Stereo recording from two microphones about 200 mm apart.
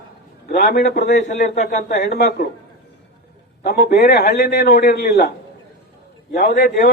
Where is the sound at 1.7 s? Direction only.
40° left (ahead or behind).